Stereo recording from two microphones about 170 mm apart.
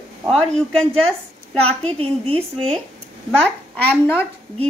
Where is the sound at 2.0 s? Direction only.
35° right (ahead or behind).